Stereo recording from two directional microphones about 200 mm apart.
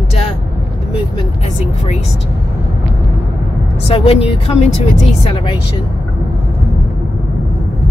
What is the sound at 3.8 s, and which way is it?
A woman's voice, 30° left (ahead or behind).